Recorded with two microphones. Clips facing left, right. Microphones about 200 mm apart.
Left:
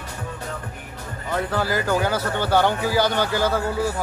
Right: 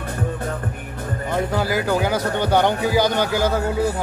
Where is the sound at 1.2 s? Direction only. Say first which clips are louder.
Right 2 dB; 15° right (ahead or behind).